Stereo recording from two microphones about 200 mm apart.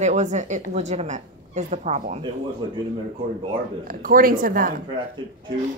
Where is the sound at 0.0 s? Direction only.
35° right (ahead or behind).